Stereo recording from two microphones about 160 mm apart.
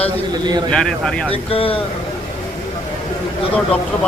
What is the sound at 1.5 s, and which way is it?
Speech, 35° left (ahead or behind).